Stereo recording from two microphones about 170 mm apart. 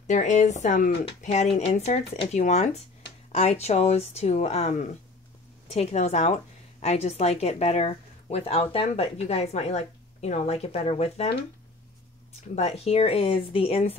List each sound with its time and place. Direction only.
0.0 s speech: 45° left (ahead or behind)
12.5 s speech: 40° left (ahead or behind)